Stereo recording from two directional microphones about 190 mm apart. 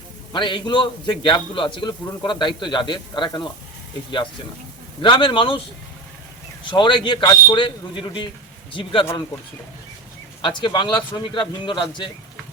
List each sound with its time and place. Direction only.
0.3 s a man's voice: 25° left (ahead or behind)
5.0 s a man's voice: 25° left (ahead or behind)
10.4 s a man's voice: 25° left (ahead or behind)